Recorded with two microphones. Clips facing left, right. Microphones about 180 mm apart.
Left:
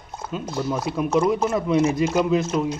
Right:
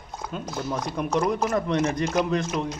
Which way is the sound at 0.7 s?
5° left (ahead or behind).